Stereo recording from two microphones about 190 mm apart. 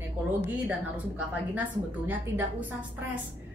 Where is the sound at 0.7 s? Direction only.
10° right (ahead or behind).